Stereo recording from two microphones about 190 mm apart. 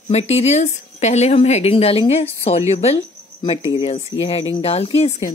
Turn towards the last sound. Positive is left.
turn(degrees=35)  # may be behind; listen again after turning